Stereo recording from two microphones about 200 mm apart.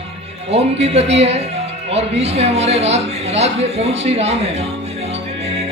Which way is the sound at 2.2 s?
30° right (ahead or behind).